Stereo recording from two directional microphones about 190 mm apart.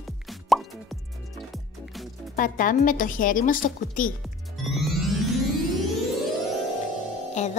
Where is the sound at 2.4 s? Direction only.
45° left (ahead or behind).